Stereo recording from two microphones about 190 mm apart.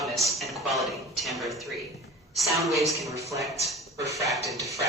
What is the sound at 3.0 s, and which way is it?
Speech, 15° right (ahead or behind).